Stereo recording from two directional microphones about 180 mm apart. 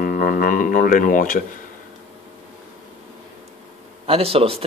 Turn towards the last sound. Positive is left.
turn(degrees=-30)  # may be behind; listen again after turning